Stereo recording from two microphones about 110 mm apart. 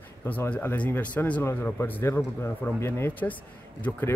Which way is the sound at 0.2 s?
20° left (ahead or behind).